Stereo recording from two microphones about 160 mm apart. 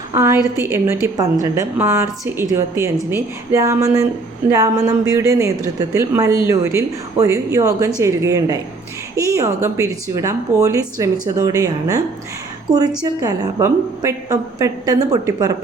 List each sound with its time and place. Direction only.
0.1 s a woman's voice: 20° right (ahead or behind)